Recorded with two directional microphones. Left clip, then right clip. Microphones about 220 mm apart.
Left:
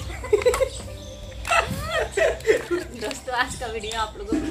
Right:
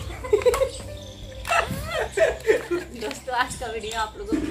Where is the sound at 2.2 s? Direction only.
5° right (ahead or behind).